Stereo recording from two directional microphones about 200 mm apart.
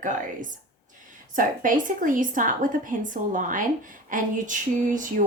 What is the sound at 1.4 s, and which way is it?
A woman's voice, 40° right (ahead or behind).